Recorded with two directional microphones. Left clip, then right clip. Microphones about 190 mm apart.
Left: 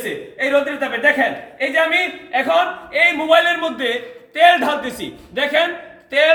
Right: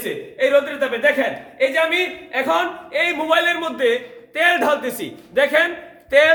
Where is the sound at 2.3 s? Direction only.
30° right (ahead or behind).